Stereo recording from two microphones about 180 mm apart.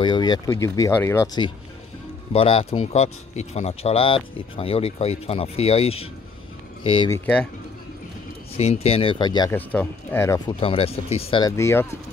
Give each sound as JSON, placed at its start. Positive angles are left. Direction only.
{"t": 0.0, "sound": "speech", "side_deg": 25}
{"t": 7.1, "sound": "speech", "side_deg": 5}
{"t": 8.5, "sound": "speech", "side_deg": 35}
{"t": 9.6, "sound": "speech", "side_deg": 10}
{"t": 10.5, "sound": "speech", "side_deg": 30}
{"t": 11.4, "sound": "speech", "side_deg": 15}